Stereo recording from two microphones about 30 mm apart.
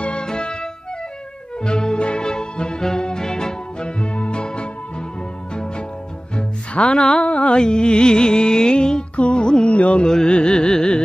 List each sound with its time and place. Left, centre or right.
0.0 s music: left
1.6 s music: left
3.8 s music: left
6.7 s music: left
7.2 s music: left
7.5 s music: left
9.1 s music: left
9.7 s carnatic music: left
10.0 s music: left